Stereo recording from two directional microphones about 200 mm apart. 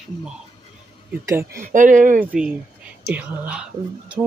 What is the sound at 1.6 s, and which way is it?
Speech, 40° right (ahead or behind).